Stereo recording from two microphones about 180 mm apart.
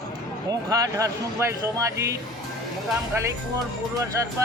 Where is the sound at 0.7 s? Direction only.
20° right (ahead or behind).